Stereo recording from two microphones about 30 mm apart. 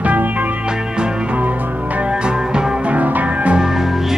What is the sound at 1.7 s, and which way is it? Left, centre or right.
Music, right.